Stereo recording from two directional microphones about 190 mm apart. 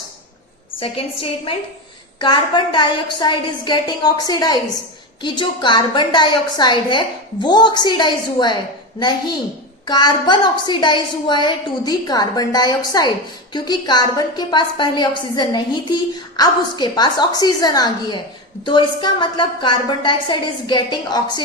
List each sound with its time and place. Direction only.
0.8 s a woman's voice: 30° left (ahead or behind)